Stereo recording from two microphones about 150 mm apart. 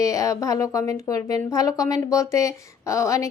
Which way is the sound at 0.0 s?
20° left (ahead or behind).